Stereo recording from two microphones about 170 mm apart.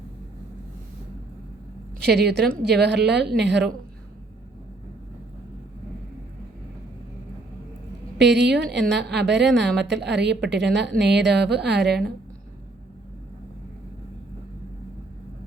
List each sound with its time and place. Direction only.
2.0 s a woman's voice: 75° right (ahead or behind)
8.2 s speech: 90° right